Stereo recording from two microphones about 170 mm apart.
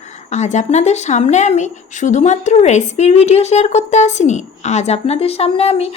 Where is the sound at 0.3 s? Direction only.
40° left (ahead or behind).